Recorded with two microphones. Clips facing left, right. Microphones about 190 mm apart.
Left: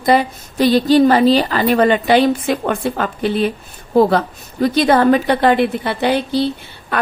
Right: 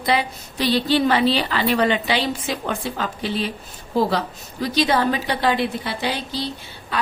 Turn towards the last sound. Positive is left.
turn(degrees=55)  # may be behind; listen again after turning